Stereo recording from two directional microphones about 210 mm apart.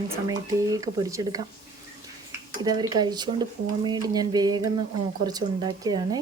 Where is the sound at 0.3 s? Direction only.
15° right (ahead or behind).